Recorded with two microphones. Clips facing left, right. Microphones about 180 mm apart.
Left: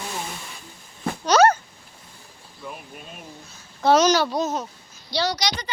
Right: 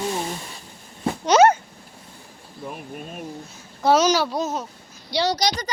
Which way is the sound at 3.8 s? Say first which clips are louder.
Even; 5° right (ahead or behind).